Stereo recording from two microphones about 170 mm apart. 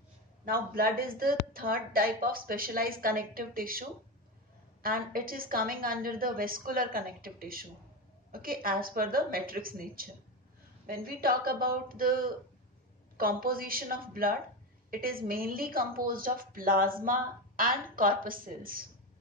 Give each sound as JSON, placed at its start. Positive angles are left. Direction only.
{"t": 0.5, "sound": "a woman's voice", "side_deg": -60}
{"t": 4.8, "sound": "a woman's voice", "side_deg": -60}